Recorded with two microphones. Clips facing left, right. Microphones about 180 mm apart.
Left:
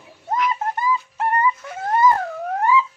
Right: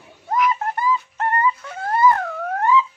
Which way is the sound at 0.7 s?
15° left (ahead or behind).